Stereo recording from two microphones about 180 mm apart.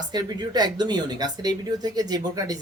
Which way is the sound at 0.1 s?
25° right (ahead or behind).